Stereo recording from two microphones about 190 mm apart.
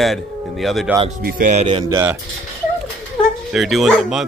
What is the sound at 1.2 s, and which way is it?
Speech, 40° right (ahead or behind).